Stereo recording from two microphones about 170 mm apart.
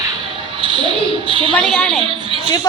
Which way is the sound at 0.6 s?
30° right (ahead or behind).